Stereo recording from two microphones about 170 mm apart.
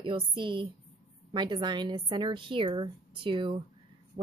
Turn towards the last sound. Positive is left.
turn(degrees=-30)  # may be behind; listen again after turning